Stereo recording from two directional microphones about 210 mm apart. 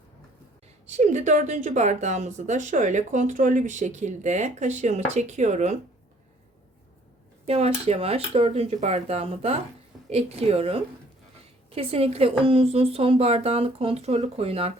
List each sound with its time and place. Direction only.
0.9 s speech: 35° right (ahead or behind)
7.4 s speech: 30° right (ahead or behind)